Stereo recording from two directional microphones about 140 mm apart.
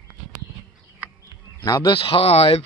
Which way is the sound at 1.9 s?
40° left (ahead or behind).